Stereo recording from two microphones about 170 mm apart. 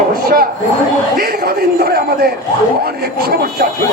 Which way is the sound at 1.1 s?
60° right (ahead or behind).